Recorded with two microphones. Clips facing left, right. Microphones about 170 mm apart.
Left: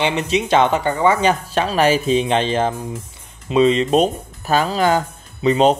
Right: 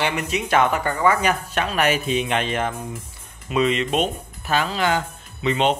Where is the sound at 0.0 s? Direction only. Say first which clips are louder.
Left 5 dB; 25° left (ahead or behind).